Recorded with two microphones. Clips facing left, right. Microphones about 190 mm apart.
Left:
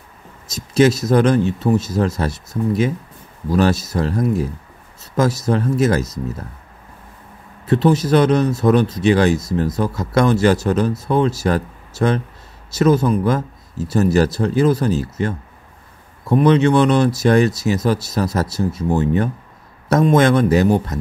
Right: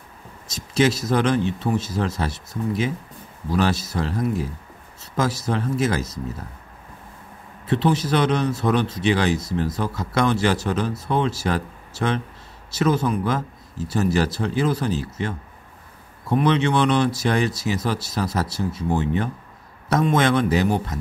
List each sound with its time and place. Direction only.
0.6 s speech: 45° left (ahead or behind)
5.1 s speech: 45° left (ahead or behind)
7.6 s speech: 45° left (ahead or behind)
16.3 s speech: 40° left (ahead or behind)